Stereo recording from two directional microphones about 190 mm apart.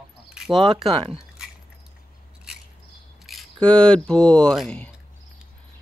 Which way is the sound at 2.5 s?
5° right (ahead or behind).